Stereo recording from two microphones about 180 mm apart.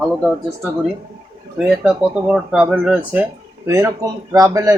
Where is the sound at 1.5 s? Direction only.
5° right (ahead or behind).